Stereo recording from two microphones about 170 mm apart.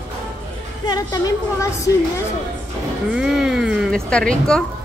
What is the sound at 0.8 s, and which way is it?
Speech, 20° left (ahead or behind).